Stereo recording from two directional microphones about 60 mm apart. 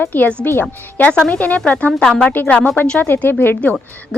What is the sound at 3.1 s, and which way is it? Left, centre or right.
Speech, left.